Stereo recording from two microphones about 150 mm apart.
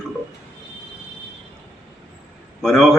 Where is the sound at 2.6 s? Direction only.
Centre (ahead or behind).